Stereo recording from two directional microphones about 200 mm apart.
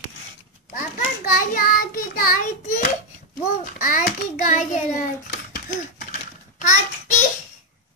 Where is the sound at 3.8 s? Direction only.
40° left (ahead or behind).